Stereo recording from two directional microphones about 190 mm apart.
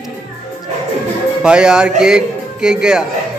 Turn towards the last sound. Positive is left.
turn(degrees=-5)  # may be behind; listen again after turning